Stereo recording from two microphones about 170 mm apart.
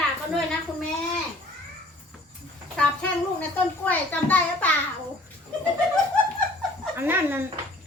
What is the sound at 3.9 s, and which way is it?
Speech, 10° left (ahead or behind).